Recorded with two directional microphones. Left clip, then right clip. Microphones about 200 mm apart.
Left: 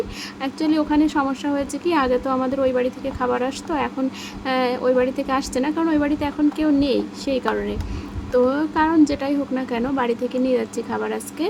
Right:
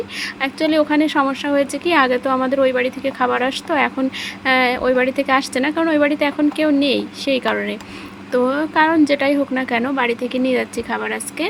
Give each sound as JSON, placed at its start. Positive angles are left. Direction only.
{"t": 0.2, "sound": "speech", "side_deg": -10}